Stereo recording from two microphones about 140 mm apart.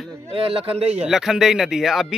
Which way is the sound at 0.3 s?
40° right (ahead or behind).